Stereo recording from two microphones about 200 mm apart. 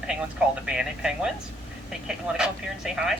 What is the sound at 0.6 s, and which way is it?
Speech, 5° right (ahead or behind).